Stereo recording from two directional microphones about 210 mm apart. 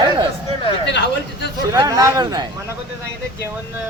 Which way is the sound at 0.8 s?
55° left (ahead or behind).